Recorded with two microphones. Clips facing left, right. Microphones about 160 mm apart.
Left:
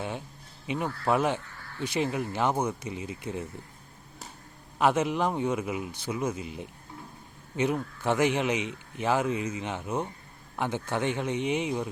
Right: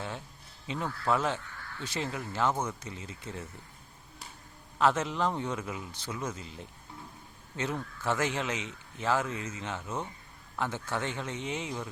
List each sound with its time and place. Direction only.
0.7 s speech: 15° left (ahead or behind)
4.8 s speech: 15° left (ahead or behind)